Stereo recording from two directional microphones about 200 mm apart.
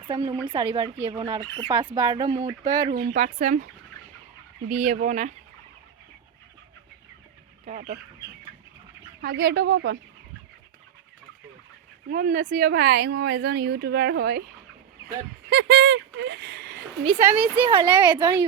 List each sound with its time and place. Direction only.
0.1 s speech: 20° right (ahead or behind)
2.9 s speech: 55° right (ahead or behind)
4.9 s speech: 40° right (ahead or behind)
7.6 s speech: 40° right (ahead or behind)
9.2 s speech: 55° right (ahead or behind)
12.1 s speech: 45° right (ahead or behind)
15.4 s speech: 60° right (ahead or behind)
17.2 s speech: 10° right (ahead or behind)
17.6 s speech: 25° right (ahead or behind)